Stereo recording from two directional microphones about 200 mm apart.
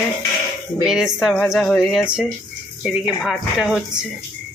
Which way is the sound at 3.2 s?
Centre (ahead or behind).